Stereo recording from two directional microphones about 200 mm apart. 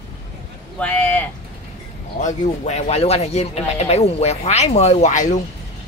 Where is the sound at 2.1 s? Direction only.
35° left (ahead or behind).